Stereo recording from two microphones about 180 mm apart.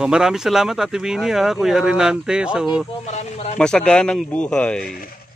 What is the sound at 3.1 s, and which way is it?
Snake, 40° left (ahead or behind).